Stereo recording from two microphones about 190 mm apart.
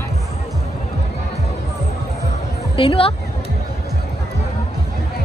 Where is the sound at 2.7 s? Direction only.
30° left (ahead or behind).